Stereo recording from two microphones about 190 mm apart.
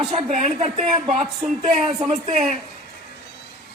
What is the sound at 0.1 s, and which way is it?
A woman's voice, 35° right (ahead or behind).